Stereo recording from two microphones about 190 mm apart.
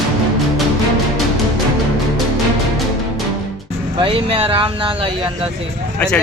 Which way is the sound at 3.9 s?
30° right (ahead or behind).